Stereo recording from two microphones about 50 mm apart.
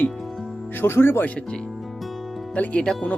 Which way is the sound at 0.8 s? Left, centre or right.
Left.